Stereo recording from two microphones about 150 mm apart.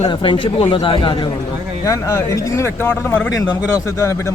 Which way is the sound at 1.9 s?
20° left (ahead or behind).